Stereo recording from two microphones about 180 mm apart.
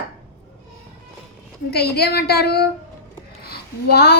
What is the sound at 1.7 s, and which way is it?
Speech, 60° left (ahead or behind).